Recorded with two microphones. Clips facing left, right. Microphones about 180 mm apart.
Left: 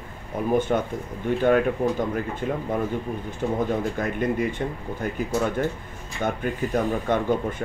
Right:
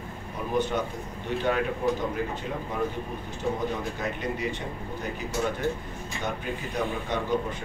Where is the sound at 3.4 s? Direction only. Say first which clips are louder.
Left 5 dB; 50° left (ahead or behind).